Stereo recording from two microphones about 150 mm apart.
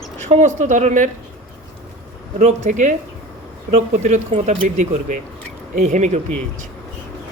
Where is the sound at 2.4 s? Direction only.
55° right (ahead or behind).